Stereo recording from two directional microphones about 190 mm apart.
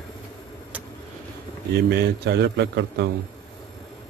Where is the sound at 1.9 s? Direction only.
60° right (ahead or behind).